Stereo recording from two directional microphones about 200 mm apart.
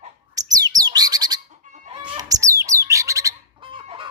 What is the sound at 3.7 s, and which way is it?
Chicken, 25° right (ahead or behind).